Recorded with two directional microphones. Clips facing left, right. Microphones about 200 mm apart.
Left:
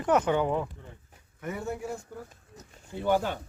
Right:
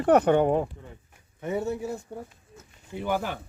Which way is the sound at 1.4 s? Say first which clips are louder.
Right 7 dB; 25° right (ahead or behind).